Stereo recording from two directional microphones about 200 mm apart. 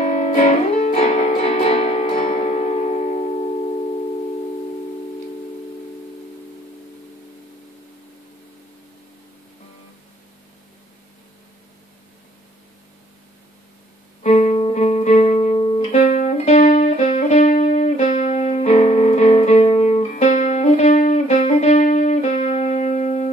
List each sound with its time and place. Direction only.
0.0 s music: 40° left (ahead or behind)
14.2 s music: 35° left (ahead or behind)